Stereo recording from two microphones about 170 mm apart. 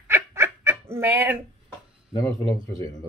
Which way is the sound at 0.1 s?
15° right (ahead or behind).